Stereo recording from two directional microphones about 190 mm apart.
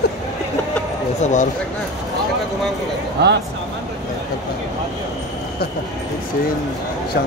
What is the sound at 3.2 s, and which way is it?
Speech, 60° right (ahead or behind).